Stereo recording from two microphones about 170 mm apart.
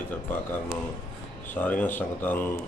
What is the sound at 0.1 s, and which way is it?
Speech, 10° left (ahead or behind).